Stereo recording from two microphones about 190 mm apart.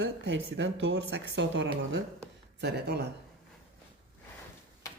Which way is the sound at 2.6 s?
60° right (ahead or behind).